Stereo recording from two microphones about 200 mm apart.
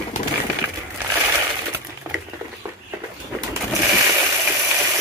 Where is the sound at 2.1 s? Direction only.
10° right (ahead or behind).